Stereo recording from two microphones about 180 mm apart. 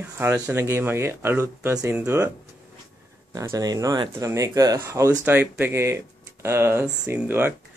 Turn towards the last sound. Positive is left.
turn(degrees=-10)  # may be behind; listen again after turning